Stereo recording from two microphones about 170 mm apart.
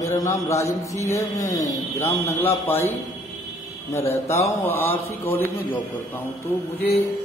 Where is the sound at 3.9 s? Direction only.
15° left (ahead or behind).